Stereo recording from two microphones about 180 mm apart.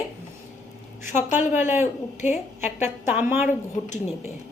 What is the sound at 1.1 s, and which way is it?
Speech, 40° left (ahead or behind).